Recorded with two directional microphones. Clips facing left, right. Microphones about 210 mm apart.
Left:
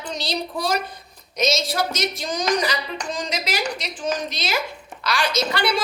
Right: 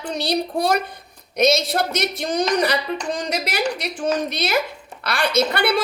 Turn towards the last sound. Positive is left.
turn(degrees=-60)  # may be behind; listen again after turning